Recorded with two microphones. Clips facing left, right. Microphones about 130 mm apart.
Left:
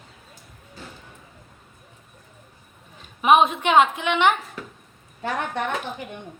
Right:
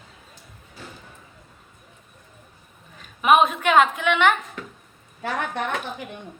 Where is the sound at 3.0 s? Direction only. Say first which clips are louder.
Left 1 dB; 30° left (ahead or behind).